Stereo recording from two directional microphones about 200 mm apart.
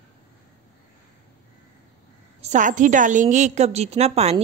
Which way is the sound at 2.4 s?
35° right (ahead or behind).